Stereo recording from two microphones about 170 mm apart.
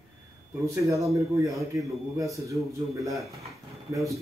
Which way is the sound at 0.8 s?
20° right (ahead or behind).